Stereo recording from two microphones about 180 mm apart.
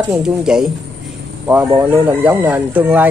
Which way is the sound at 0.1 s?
5° right (ahead or behind).